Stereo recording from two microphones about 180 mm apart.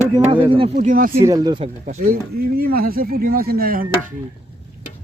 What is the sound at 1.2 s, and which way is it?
Speech, 20° right (ahead or behind).